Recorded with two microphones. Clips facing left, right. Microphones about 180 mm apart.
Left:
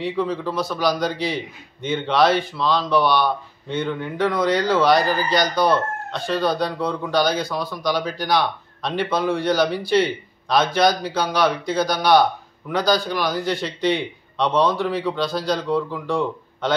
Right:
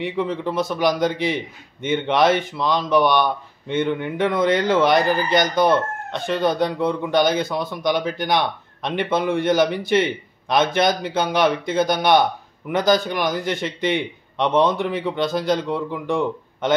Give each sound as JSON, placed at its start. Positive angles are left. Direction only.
{"t": 0.0, "sound": "speech", "side_deg": -20}